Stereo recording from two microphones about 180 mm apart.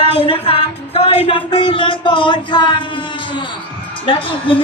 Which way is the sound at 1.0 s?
30° left (ahead or behind).